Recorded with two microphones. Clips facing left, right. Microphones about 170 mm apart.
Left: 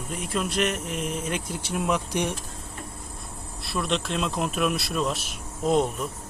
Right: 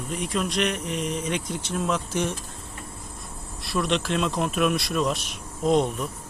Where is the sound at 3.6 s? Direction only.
Centre (ahead or behind).